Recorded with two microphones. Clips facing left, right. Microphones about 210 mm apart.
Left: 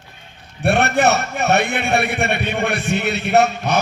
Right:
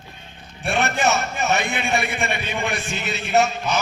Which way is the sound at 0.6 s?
65° left (ahead or behind).